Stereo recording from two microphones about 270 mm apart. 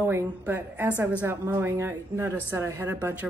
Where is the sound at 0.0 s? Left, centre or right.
Centre.